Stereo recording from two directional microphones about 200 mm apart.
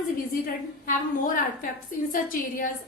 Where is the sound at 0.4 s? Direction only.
40° left (ahead or behind).